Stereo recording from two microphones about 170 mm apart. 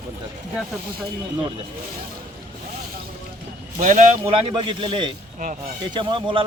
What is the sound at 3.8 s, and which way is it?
Speech, 45° right (ahead or behind).